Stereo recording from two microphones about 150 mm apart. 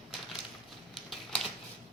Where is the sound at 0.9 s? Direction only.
Centre (ahead or behind).